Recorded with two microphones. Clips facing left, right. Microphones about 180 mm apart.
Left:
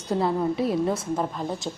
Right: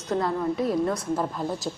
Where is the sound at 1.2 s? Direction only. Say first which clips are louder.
Even; centre (ahead or behind).